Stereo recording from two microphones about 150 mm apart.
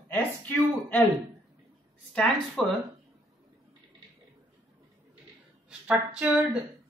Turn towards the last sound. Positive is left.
turn(degrees=-5)  # may be behind; listen again after turning